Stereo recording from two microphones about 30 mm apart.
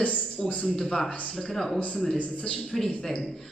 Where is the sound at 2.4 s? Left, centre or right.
Left.